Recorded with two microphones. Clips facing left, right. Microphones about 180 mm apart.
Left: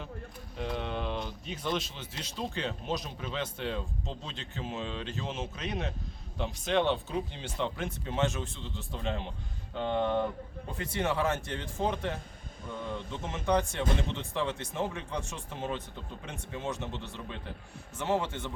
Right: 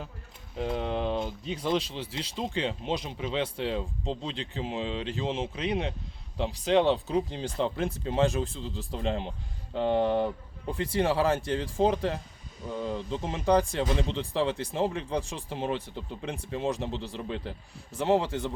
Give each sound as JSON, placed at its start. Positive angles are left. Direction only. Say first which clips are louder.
{"t": 0.6, "sound": "speech", "louder": "right 5 dB", "side_deg": -30}